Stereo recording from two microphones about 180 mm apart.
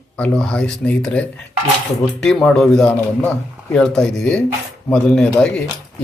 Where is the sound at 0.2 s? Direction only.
5° left (ahead or behind).